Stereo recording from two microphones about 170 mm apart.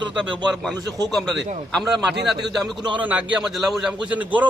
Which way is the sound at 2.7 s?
25° right (ahead or behind).